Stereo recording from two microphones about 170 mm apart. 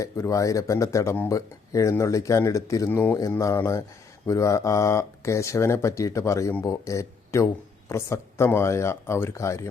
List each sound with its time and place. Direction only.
0.0 s speech: 20° left (ahead or behind)